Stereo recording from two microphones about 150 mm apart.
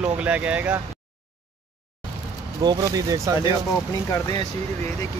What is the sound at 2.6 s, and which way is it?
Speech, 30° right (ahead or behind).